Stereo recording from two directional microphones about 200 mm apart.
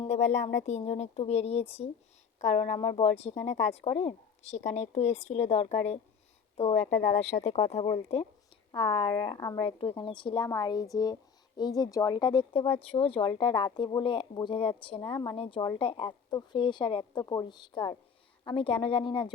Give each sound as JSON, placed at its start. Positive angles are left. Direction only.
{"t": 0.0, "sound": "a woman's voice", "side_deg": 35}